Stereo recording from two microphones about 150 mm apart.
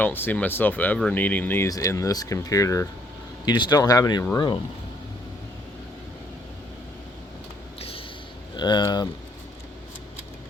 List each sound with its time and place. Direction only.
0.0 s speech: 15° left (ahead or behind); by 4.6 s 30° left (ahead or behind)
7.8 s a sound: 40° left (ahead or behind)
8.5 s speech: 30° left (ahead or behind)